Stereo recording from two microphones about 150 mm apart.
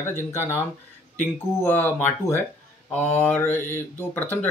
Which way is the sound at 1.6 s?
15° left (ahead or behind).